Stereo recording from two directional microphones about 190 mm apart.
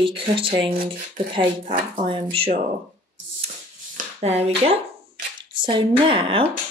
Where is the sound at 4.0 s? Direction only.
35° right (ahead or behind).